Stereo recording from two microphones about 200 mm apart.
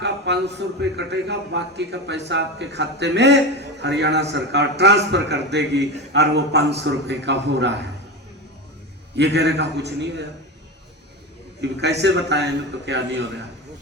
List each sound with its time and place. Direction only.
0.0 s a man's voice: 60° right (ahead or behind)
9.1 s a man's voice: 55° right (ahead or behind)
11.6 s a man's voice: 60° right (ahead or behind)